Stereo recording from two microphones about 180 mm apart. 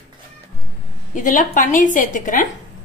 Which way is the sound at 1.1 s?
45° left (ahead or behind).